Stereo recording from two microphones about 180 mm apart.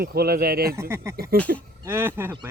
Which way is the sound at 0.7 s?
15° right (ahead or behind).